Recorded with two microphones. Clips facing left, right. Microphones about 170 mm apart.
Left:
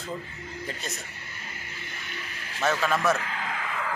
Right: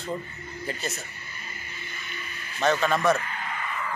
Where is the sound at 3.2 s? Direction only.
90° left.